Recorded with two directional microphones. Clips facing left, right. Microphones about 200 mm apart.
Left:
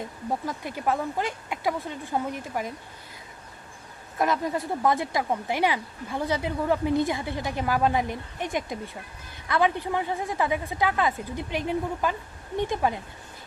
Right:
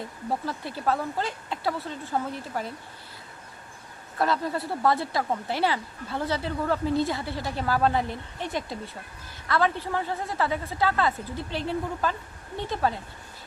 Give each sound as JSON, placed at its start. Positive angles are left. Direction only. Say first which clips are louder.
{"t": 0.4, "sound": "a woman's voice", "louder": "even", "side_deg": 15}
{"t": 4.2, "sound": "a woman's voice", "louder": "left 1 dB", "side_deg": 15}